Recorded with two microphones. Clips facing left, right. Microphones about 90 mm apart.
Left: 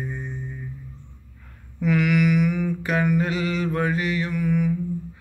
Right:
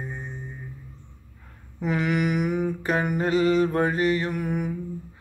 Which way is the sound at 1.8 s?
35° right (ahead or behind).